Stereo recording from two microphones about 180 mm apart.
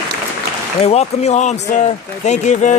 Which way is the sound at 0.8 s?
35° left (ahead or behind).